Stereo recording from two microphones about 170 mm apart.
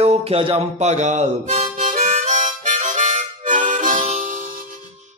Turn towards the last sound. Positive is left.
turn(degrees=-45)  # may be behind; listen again after turning